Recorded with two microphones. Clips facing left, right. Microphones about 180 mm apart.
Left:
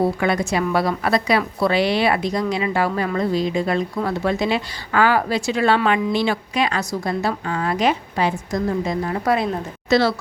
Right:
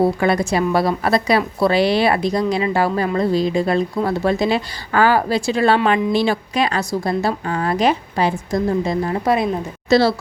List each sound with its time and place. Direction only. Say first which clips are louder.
0.0 s speech: right 3 dB; 35° right (ahead or behind)
9.9 s speech: right 3 dB; 35° right (ahead or behind)